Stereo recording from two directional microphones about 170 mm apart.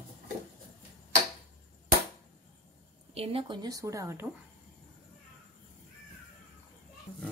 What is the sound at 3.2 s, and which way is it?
Speech, 35° right (ahead or behind).